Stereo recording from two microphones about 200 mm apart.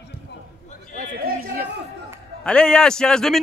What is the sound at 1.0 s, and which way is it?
Chatter, 45° right (ahead or behind).